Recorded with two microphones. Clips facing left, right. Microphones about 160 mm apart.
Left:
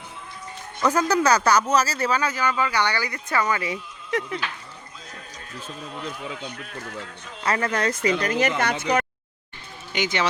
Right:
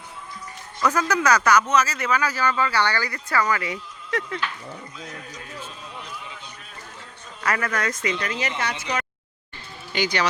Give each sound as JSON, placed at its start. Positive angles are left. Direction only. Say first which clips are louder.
{"t": 0.8, "sound": "speech", "louder": "left 2 dB", "side_deg": 30}
{"t": 2.3, "sound": "speech", "louder": "right 1 dB", "side_deg": 15}
{"t": 5.6, "sound": "speech", "louder": "left 5 dB", "side_deg": 50}
{"t": 7.4, "sound": "speech", "louder": "left 2 dB", "side_deg": 25}
{"t": 8.2, "sound": "speech", "louder": "left 5 dB", "side_deg": 45}
{"t": 9.9, "sound": "speech", "louder": "right 1 dB", "side_deg": 20}